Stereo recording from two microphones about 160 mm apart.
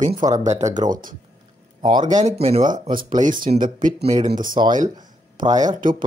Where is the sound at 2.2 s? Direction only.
45° right (ahead or behind).